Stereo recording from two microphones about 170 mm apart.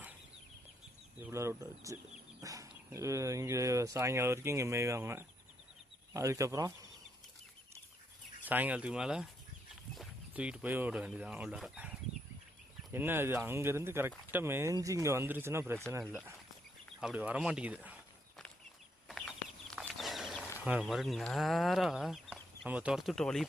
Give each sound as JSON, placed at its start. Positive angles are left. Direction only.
{"t": 1.3, "sound": "speech", "side_deg": -15}
{"t": 8.4, "sound": "speech", "side_deg": -10}
{"t": 17.0, "sound": "speech", "side_deg": -5}
{"t": 19.0, "sound": "a sound", "side_deg": 0}
{"t": 20.8, "sound": "speech", "side_deg": 0}